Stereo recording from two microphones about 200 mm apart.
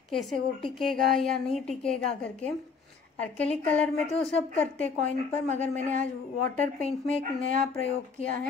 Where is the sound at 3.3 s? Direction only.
5° left (ahead or behind).